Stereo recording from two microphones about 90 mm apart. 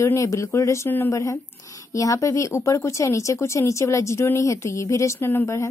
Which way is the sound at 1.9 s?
35° left (ahead or behind).